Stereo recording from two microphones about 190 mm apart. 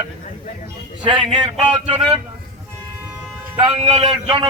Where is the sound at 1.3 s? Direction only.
25° right (ahead or behind).